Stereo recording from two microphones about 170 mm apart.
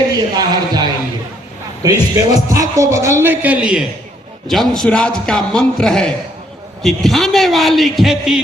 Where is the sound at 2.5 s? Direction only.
20° right (ahead or behind).